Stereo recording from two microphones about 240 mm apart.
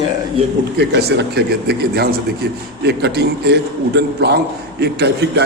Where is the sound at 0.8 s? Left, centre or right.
Right.